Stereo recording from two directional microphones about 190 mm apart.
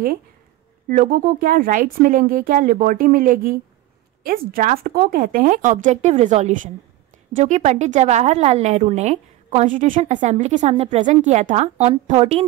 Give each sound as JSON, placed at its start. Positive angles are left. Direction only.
{"t": 0.8, "sound": "a woman's voice", "side_deg": -50}